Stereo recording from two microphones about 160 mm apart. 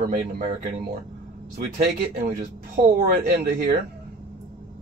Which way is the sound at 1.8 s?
55° right (ahead or behind).